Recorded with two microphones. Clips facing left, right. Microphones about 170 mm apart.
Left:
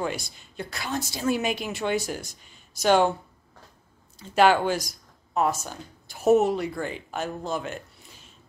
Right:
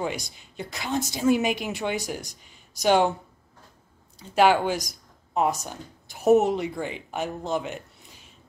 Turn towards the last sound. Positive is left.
turn(degrees=-15)  # may be behind; listen again after turning